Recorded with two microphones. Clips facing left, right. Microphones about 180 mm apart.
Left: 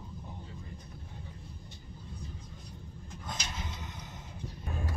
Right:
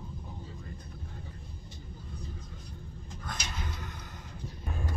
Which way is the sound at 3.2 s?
20° left (ahead or behind).